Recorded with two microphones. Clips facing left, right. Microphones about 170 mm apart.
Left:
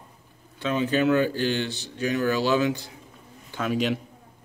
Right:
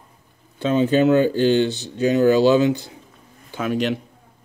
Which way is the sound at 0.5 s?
30° right (ahead or behind).